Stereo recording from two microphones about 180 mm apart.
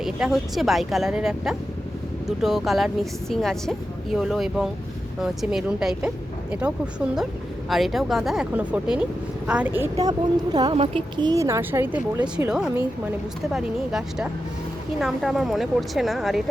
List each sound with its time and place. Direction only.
0.0 s a woman's voice: 5° right (ahead or behind)
13.5 s a woman's voice: 5° right (ahead or behind)